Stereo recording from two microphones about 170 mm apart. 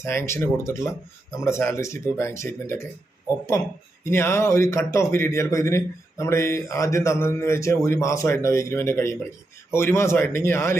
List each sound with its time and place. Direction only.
0.0 s speech: 15° left (ahead or behind)
4.0 s speech: 15° left (ahead or behind)